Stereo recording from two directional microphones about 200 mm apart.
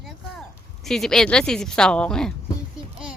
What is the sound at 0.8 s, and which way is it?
A child's voice, centre (ahead or behind).